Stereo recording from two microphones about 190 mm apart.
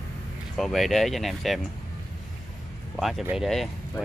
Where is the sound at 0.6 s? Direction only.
Centre (ahead or behind).